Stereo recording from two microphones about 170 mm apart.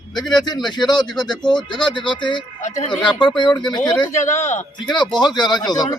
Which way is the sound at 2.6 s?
40° left (ahead or behind).